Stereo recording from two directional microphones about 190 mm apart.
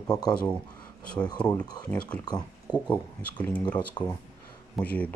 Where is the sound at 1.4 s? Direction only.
5° left (ahead or behind).